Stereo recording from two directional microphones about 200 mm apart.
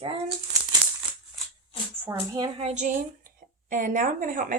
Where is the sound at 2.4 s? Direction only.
30° right (ahead or behind).